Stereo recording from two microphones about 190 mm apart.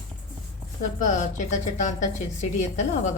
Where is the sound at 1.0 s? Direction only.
40° left (ahead or behind).